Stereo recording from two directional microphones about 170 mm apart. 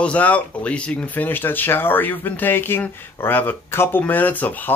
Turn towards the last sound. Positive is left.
turn(degrees=10)  # may be behind; listen again after turning